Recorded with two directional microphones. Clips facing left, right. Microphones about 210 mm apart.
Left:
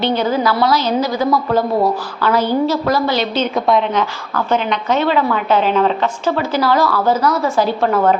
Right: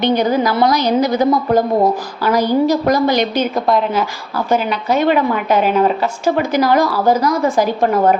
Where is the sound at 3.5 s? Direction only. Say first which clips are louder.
Even; centre (ahead or behind).